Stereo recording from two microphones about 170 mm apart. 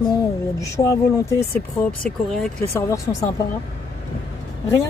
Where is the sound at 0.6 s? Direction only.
20° left (ahead or behind).